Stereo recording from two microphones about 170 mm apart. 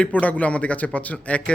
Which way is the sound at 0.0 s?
10° left (ahead or behind).